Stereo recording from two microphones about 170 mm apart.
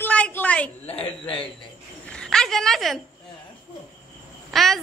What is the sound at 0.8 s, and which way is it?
Speech, 35° left (ahead or behind).